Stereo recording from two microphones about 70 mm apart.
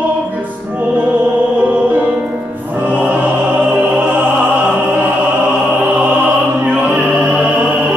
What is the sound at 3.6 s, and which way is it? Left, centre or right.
Opera, centre.